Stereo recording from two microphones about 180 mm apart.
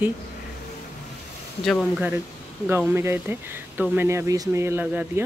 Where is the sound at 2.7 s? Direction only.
10° right (ahead or behind).